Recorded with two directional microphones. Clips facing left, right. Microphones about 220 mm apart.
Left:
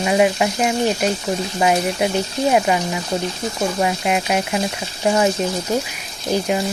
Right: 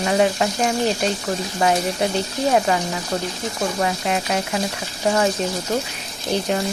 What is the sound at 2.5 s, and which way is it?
Speech, 10° left (ahead or behind).